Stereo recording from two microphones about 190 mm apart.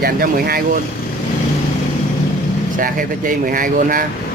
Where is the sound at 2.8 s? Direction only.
45° right (ahead or behind).